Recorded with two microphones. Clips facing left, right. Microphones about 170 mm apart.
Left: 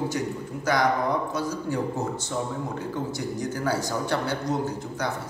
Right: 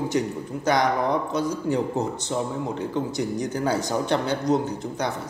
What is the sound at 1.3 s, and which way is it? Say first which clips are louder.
Speech: right 4 dB; 20° right (ahead or behind).